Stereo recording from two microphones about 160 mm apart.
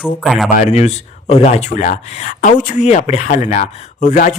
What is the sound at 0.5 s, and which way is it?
Speech, 45° left (ahead or behind).